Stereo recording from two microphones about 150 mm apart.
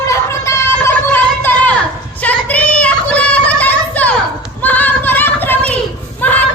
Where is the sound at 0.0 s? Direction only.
20° left (ahead or behind).